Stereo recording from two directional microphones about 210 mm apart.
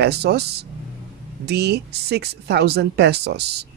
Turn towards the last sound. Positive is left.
turn(degrees=-50)  # may be behind; listen again after turning